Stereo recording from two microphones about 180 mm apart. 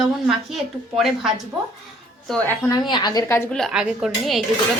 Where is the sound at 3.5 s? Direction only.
Centre (ahead or behind).